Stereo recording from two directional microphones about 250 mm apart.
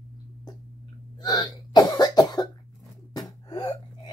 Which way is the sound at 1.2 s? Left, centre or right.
Centre.